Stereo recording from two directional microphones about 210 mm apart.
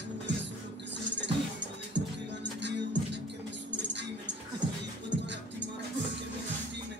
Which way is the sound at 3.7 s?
55° right (ahead or behind).